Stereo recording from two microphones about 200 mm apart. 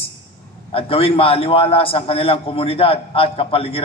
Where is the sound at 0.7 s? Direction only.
30° left (ahead or behind).